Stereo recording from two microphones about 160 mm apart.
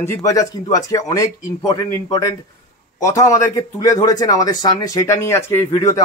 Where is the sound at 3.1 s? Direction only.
20° left (ahead or behind).